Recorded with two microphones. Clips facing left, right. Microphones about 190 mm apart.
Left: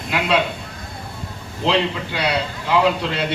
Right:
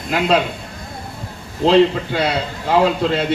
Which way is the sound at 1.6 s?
50° right (ahead or behind).